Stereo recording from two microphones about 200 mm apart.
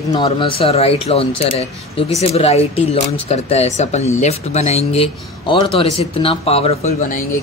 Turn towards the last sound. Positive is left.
turn(degrees=30)  # may be behind; listen again after turning